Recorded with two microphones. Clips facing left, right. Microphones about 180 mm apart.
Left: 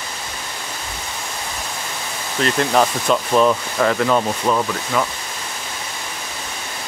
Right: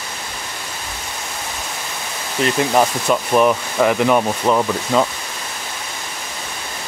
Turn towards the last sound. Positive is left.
turn(degrees=-20)  # may be behind; listen again after turning